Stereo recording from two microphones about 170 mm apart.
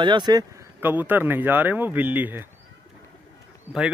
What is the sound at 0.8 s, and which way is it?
Speech, 10° right (ahead or behind).